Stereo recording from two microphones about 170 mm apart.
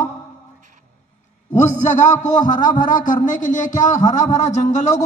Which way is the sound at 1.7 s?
50° left (ahead or behind).